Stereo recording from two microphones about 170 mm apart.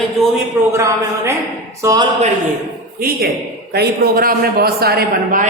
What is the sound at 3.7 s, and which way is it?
A man's voice, 65° right (ahead or behind).